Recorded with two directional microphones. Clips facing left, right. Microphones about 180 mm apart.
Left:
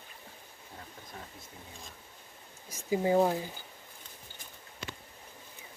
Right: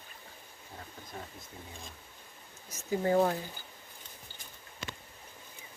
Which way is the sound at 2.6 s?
10° left (ahead or behind).